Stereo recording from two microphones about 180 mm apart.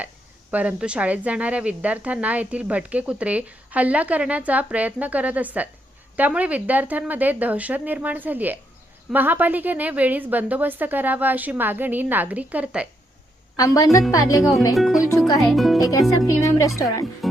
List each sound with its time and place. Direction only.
0.5 s speech: 10° right (ahead or behind)
13.6 s a woman's voice: 20° left (ahead or behind)
15.4 s speech: centre (ahead or behind)
16.2 s a woman's voice: 15° left (ahead or behind)